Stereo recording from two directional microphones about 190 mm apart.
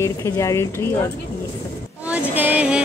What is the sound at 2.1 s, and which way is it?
Music, 10° right (ahead or behind).